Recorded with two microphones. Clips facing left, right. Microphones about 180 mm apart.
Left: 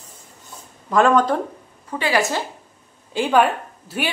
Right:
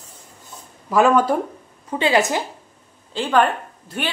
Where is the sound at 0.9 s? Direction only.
5° right (ahead or behind).